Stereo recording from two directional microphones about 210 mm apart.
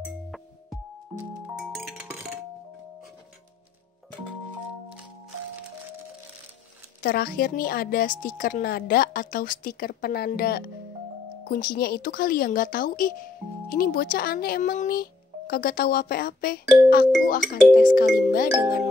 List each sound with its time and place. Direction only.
1.1 s chink: centre (ahead or behind)
7.0 s speech: 50° left (ahead or behind)